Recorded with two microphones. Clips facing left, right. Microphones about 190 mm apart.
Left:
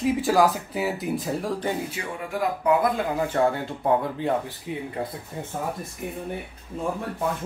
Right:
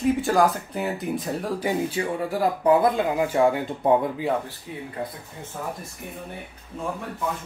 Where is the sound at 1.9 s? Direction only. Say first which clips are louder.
Right 5 dB; 35° right (ahead or behind).